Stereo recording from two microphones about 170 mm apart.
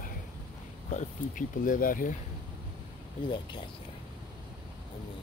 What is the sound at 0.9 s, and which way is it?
Speech, 50° left (ahead or behind).